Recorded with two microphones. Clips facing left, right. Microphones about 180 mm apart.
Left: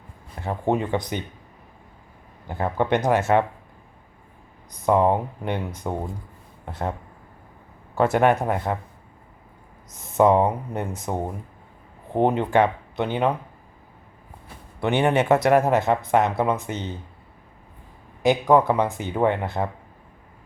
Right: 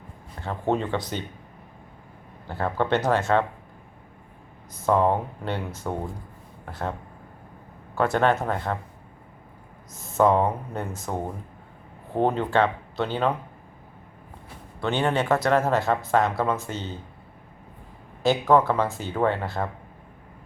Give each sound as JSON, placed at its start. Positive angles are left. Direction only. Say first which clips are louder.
{"t": 0.4, "sound": "speech", "louder": "left 2 dB", "side_deg": 15}
{"t": 2.5, "sound": "speech", "louder": "left 2 dB", "side_deg": 15}
{"t": 4.9, "sound": "speech", "louder": "left 2 dB", "side_deg": 15}
{"t": 8.1, "sound": "speech", "louder": "left 3 dB", "side_deg": 15}
{"t": 10.0, "sound": "speech", "louder": "left 3 dB", "side_deg": 20}
{"t": 14.8, "sound": "speech", "louder": "left 4 dB", "side_deg": 20}
{"t": 18.2, "sound": "speech", "louder": "left 2 dB", "side_deg": 15}